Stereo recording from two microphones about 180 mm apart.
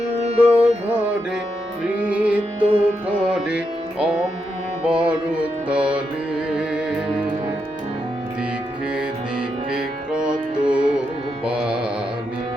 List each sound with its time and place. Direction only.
0.1 s music: 35° right (ahead or behind)
1.8 s music: 5° right (ahead or behind)
9.7 s music: 5° right (ahead or behind)
11.4 s carnatic music: 5° right (ahead or behind)